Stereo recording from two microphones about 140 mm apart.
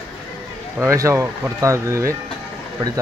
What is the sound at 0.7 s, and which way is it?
Speech, 20° right (ahead or behind).